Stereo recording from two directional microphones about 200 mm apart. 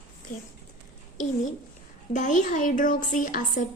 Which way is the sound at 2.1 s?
40° left (ahead or behind).